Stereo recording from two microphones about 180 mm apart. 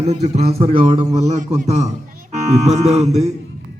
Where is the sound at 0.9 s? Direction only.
25° right (ahead or behind).